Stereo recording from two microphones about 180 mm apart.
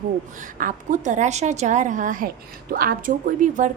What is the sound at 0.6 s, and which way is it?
A woman's voice, 45° right (ahead or behind).